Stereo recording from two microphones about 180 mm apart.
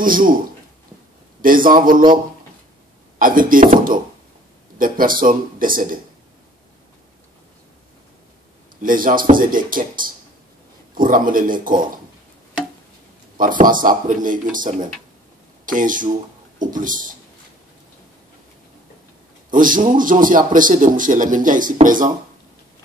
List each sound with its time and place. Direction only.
0.0 s a man's voice: 50° right (ahead or behind)
1.4 s a man's voice: 50° right (ahead or behind)
3.2 s a man's voice: 50° right (ahead or behind)
8.8 s a man's voice: 50° right (ahead or behind)
13.4 s a man's voice: 50° right (ahead or behind)
19.5 s a man's voice: 50° right (ahead or behind)